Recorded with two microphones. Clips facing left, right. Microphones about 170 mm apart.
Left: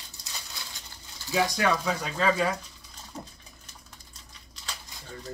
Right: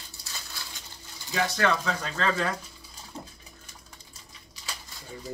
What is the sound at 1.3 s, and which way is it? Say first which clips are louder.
Speech: left 1 dB; 15° left (ahead or behind).